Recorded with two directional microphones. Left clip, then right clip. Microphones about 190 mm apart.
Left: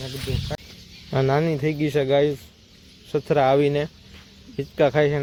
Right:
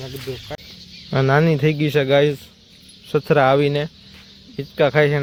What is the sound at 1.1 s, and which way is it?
Speech, 25° right (ahead or behind).